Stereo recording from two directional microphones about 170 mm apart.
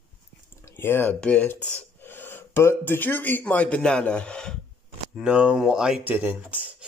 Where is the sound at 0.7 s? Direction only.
15° left (ahead or behind).